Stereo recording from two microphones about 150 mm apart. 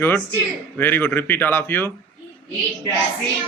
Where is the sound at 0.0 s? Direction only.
15° left (ahead or behind).